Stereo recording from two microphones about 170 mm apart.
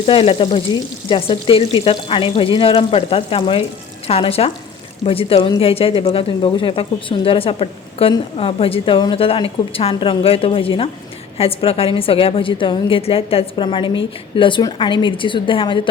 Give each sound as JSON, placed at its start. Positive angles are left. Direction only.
{"t": 0.0, "sound": "a woman's voice", "side_deg": 35}